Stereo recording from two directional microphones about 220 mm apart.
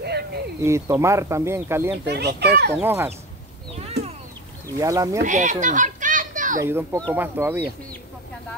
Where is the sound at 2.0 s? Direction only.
50° right (ahead or behind).